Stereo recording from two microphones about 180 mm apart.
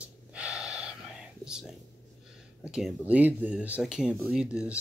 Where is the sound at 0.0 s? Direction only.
5° right (ahead or behind).